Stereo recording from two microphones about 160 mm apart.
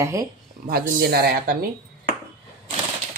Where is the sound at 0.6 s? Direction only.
70° right (ahead or behind).